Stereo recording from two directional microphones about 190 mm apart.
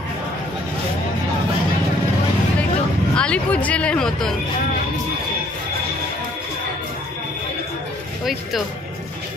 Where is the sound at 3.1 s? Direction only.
5° left (ahead or behind).